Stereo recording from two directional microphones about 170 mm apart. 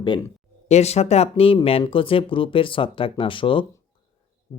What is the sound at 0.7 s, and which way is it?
Speech, 40° left (ahead or behind).